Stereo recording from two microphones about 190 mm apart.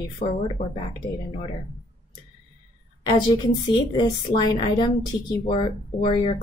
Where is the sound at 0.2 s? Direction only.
40° left (ahead or behind).